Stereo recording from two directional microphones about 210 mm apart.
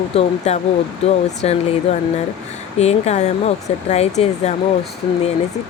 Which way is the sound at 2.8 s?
30° left (ahead or behind).